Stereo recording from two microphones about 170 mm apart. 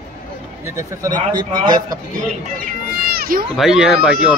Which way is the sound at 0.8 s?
20° right (ahead or behind).